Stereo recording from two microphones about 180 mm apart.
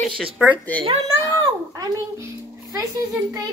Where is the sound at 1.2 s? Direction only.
20° right (ahead or behind).